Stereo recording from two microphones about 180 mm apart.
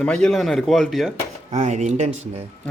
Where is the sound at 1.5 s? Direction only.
40° right (ahead or behind).